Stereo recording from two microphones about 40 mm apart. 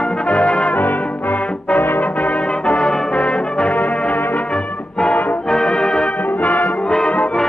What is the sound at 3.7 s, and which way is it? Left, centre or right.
Music, left.